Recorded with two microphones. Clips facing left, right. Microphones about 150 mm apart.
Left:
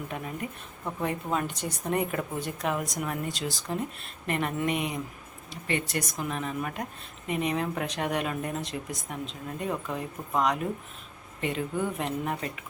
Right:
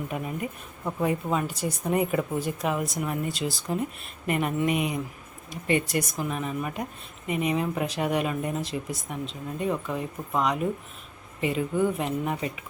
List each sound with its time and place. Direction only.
0.1 s a woman's voice: 10° right (ahead or behind)